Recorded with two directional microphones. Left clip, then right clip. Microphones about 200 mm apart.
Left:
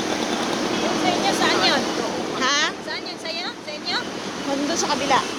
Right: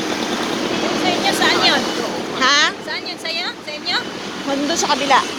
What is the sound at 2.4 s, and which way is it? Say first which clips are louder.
Boat: right 7 dB; 15° right (ahead or behind).